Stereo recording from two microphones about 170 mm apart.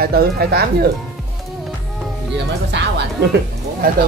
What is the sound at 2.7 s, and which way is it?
Music, 85° right.